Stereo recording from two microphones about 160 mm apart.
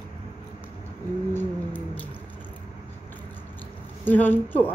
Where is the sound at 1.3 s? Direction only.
10° left (ahead or behind).